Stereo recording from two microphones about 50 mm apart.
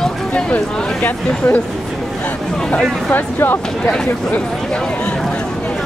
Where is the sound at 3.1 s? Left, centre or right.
Left.